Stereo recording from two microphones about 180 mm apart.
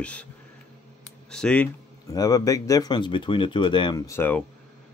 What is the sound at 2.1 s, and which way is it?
A man's voice, 20° left (ahead or behind).